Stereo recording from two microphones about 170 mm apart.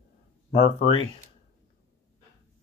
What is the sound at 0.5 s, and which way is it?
Speech, 80° left.